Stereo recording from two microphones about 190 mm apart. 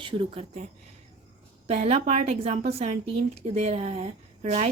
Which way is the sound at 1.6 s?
35° right (ahead or behind).